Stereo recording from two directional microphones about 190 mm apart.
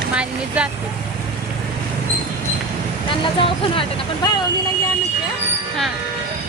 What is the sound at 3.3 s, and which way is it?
Speech, 30° left (ahead or behind).